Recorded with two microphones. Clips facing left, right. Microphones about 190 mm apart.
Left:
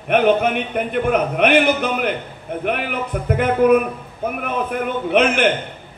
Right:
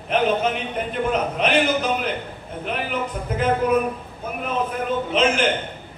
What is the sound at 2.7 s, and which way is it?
A man's voice, 60° left (ahead or behind).